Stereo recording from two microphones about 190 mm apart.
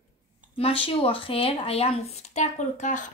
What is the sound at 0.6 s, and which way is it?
A woman's voice, 30° left (ahead or behind).